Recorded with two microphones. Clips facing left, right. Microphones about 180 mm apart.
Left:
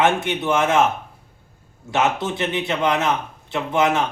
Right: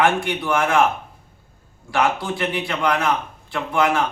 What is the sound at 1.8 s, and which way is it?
A man's voice, 20° left (ahead or behind).